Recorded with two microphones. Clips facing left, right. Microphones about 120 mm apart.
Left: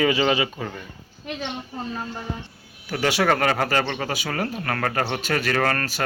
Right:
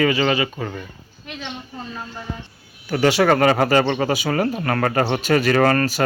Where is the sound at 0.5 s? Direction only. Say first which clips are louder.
Right 3 dB; centre (ahead or behind).